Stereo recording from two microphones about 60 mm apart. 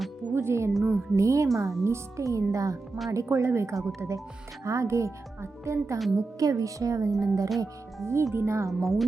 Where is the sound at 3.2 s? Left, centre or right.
Right.